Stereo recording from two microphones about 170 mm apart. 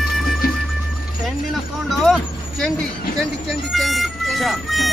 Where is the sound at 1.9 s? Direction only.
Centre (ahead or behind).